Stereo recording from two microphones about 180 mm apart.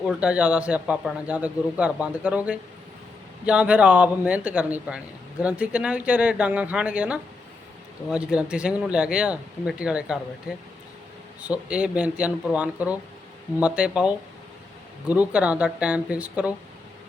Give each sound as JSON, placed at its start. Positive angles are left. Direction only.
{"t": 0.0, "sound": "speech", "side_deg": -5}